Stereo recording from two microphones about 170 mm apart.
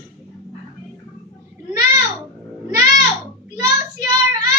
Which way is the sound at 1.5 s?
15° right (ahead or behind).